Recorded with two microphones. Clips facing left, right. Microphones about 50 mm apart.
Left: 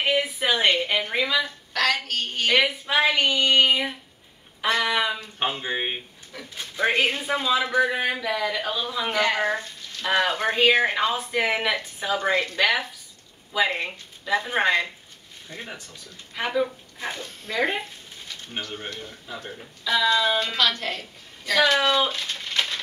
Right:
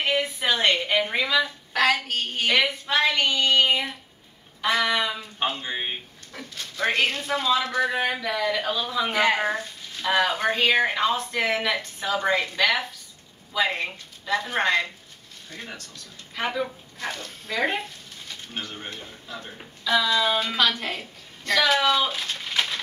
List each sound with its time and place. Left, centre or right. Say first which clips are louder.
0.0 s a sound: left 1 dB; centre
1.1 s speech: right 1 dB; centre
1.7 s a woman's voice: right 1 dB; centre
2.5 s speech: left 2 dB; centre
9.1 s a woman's voice: even; centre
9.5 s speech: left 1 dB; centre
16.3 s speech: left 2 dB; centre
17.0 s speech: even; centre
17.6 s speech: left 1 dB; centre
18.9 s speech: left 1 dB; centre
20.5 s a woman's voice: even; centre
21.5 s speech: left 1 dB; centre